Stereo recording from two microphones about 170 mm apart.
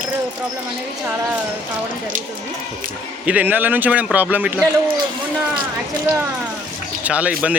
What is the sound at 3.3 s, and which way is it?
A man's voice, 10° right (ahead or behind).